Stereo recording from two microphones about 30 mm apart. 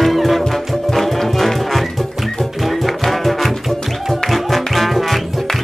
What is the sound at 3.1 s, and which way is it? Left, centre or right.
Music, centre.